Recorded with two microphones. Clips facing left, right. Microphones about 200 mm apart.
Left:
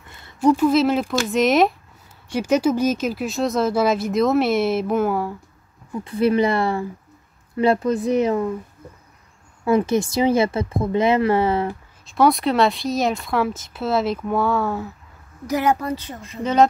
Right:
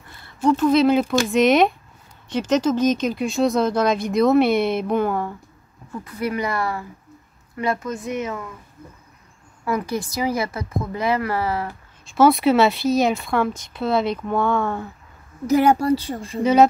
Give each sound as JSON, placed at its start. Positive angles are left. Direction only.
{"t": 0.2, "sound": "a sound", "side_deg": 20}
{"t": 0.7, "sound": "speech", "side_deg": 0}
{"t": 6.0, "sound": "speech", "side_deg": 30}
{"t": 9.7, "sound": "speech", "side_deg": 25}
{"t": 12.1, "sound": "speech", "side_deg": 0}
{"t": 15.4, "sound": "a woman's voice", "side_deg": -30}